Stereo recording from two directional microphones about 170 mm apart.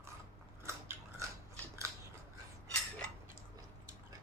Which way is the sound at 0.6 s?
15° right (ahead or behind).